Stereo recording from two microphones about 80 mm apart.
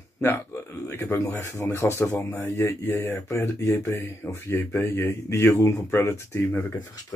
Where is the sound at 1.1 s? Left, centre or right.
Left.